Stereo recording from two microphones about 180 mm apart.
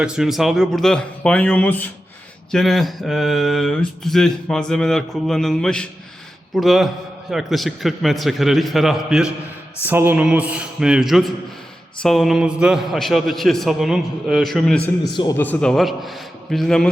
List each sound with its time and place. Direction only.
0.0 s speech: centre (ahead or behind)
15.1 s a man's voice: 25° left (ahead or behind)
15.4 s speech: 5° left (ahead or behind)